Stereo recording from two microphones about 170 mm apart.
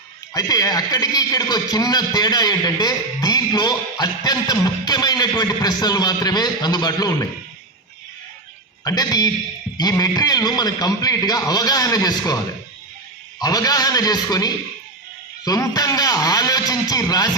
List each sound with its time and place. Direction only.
0.3 s a man's voice: 20° left (ahead or behind)
8.8 s a man's voice: 20° left (ahead or behind)
13.4 s a man's voice: 20° left (ahead or behind)